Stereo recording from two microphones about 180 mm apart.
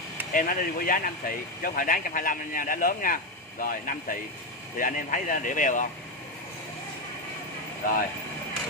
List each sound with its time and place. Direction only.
0.3 s speech: 50° left (ahead or behind)